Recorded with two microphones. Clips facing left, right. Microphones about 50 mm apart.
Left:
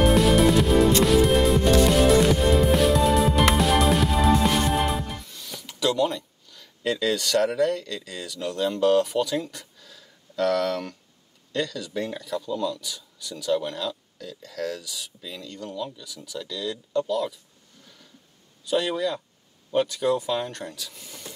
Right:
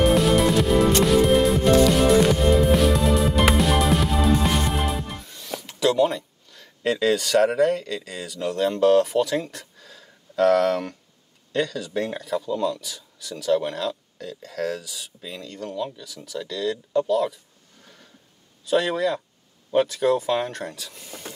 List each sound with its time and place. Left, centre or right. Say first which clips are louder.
0.0 s music: even; centre
5.7 s a sound: right 3 dB; centre
7.4 s speech: right 3 dB; centre
9.8 s a sound: right 3 dB; centre
11.5 s speech: right 3 dB; centre
12.4 s speech: right 3 dB; right
12.8 s speech: left 1 dB; centre
18.7 s speech: right 3 dB; centre
20.2 s speech: right 3 dB; right
20.5 s speech: right 3 dB; centre